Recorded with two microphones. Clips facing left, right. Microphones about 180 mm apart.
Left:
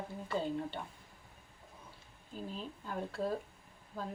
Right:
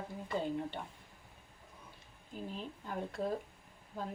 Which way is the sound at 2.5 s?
20° right (ahead or behind).